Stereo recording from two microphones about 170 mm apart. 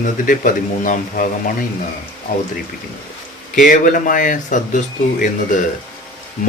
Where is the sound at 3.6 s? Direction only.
50° left (ahead or behind).